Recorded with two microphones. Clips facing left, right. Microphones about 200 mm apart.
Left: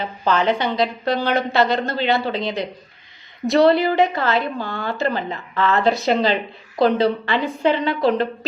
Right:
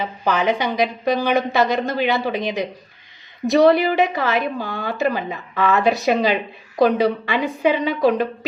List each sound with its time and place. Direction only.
0.0 s a woman's voice: 15° right (ahead or behind)